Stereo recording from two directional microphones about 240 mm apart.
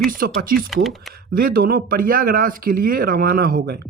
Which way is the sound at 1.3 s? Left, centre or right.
Right.